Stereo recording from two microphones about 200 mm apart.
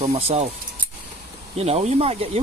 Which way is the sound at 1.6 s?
30° right (ahead or behind).